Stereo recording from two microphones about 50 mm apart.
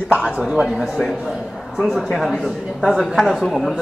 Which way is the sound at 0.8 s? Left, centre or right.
Centre.